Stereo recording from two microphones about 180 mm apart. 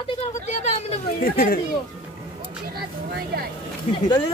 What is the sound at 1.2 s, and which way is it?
Speech, 55° left (ahead or behind).